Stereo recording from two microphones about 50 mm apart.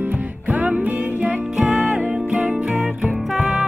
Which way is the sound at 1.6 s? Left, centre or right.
Centre.